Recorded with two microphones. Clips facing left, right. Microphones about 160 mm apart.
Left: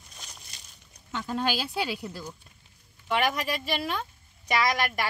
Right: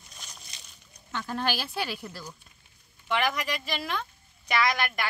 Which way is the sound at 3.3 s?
30° left (ahead or behind).